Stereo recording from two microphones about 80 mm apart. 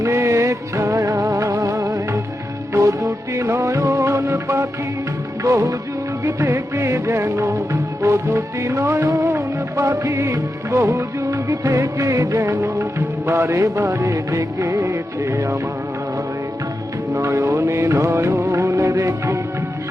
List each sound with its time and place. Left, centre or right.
0.0 s music: right
17.2 s music: right